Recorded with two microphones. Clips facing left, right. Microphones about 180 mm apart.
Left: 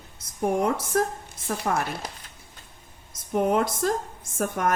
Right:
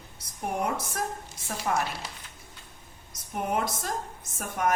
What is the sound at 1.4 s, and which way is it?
Speech, 55° left (ahead or behind).